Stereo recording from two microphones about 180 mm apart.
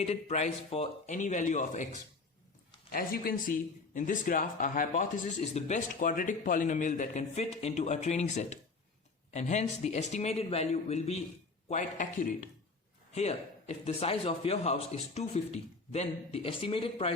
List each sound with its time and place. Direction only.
0.0 s a man's voice: 35° left (ahead or behind)
2.9 s a man's voice: 55° left (ahead or behind); by 17.2 s 30° left (ahead or behind)